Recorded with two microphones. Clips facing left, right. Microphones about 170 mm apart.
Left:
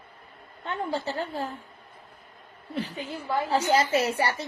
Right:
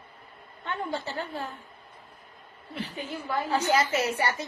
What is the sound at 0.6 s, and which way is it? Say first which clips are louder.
Speech: left 2 dB; 35° left (ahead or behind).